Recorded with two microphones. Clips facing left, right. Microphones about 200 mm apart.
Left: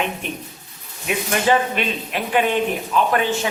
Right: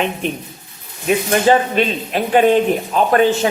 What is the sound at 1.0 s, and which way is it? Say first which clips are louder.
Speech: right 6 dB; 35° right (ahead or behind).